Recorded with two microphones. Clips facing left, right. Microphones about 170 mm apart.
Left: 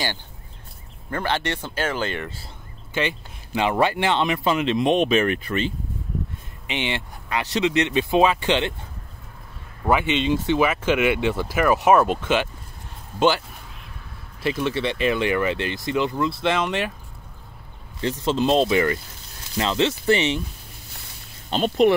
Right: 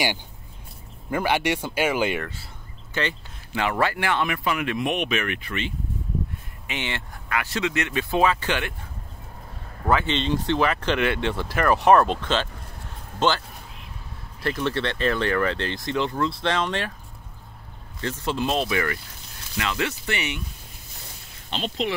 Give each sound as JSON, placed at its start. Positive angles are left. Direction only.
{"t": 1.1, "sound": "speech", "side_deg": -10}
{"t": 2.9, "sound": "speech", "side_deg": 15}
{"t": 6.7, "sound": "speech", "side_deg": 20}
{"t": 9.8, "sound": "speech", "side_deg": 10}
{"t": 14.4, "sound": "speech", "side_deg": 10}
{"t": 18.2, "sound": "speech", "side_deg": 25}
{"t": 21.5, "sound": "speech", "side_deg": 50}